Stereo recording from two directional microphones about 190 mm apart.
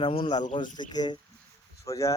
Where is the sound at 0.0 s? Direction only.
25° left (ahead or behind).